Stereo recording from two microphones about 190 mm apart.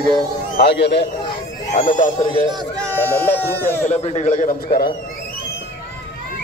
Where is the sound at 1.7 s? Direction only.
40° left (ahead or behind).